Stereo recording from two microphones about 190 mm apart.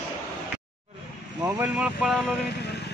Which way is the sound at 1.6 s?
5° right (ahead or behind).